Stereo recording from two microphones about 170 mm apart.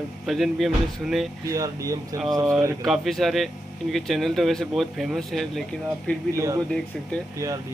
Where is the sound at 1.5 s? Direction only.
20° right (ahead or behind).